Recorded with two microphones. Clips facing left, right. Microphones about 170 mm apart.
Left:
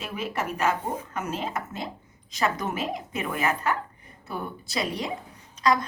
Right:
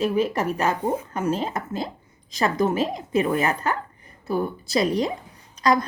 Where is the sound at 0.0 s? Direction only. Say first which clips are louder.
Right 9 dB; 35° right (ahead or behind).